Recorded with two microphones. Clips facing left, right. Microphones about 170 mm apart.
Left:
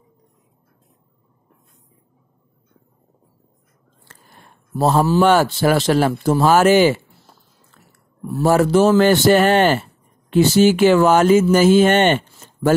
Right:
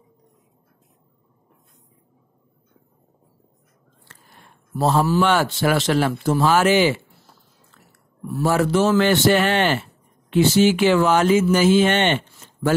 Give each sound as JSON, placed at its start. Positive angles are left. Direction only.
{"t": 4.1, "sound": "a sound", "side_deg": 40}
{"t": 5.2, "sound": "speech", "side_deg": 40}
{"t": 8.4, "sound": "speech", "side_deg": 40}